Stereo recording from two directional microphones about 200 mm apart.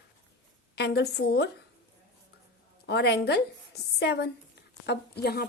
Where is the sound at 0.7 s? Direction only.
55° left (ahead or behind).